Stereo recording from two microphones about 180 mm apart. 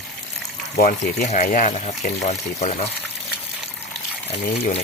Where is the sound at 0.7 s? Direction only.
45° left (ahead or behind).